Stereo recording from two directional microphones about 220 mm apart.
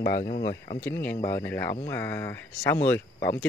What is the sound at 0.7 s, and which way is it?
Speech, 10° left (ahead or behind).